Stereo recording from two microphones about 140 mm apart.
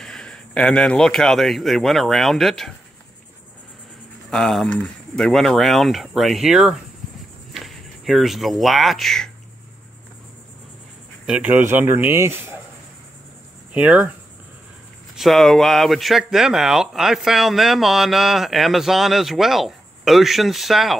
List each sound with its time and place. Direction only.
0.0 s a man's voice: 5° left (ahead or behind)
4.3 s speech: 5° left (ahead or behind)
11.2 s speech: 10° right (ahead or behind)
13.7 s speech: 10° right (ahead or behind)
15.1 s speech: centre (ahead or behind)